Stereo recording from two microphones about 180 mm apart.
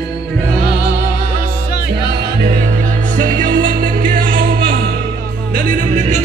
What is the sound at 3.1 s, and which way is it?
Music, 50° right (ahead or behind).